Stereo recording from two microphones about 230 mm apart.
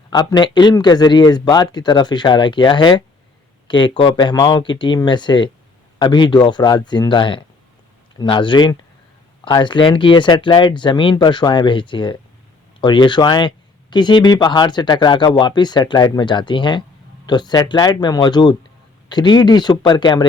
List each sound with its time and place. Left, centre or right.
0.1 s speech: centre